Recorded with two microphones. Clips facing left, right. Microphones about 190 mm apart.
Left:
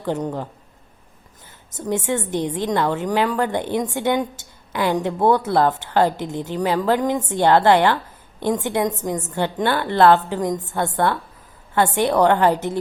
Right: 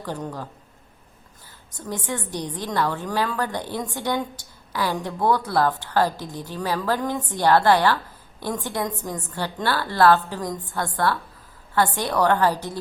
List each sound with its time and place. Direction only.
0.0 s a woman's voice: 20° left (ahead or behind)
1.8 s a woman's voice: 25° left (ahead or behind)